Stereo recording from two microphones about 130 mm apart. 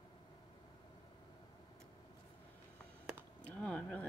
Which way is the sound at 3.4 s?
10° left (ahead or behind).